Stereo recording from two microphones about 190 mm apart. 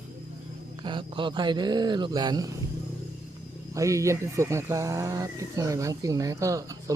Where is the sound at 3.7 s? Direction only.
15° right (ahead or behind).